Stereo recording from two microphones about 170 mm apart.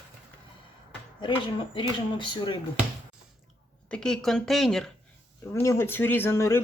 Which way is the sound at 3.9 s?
5° left (ahead or behind).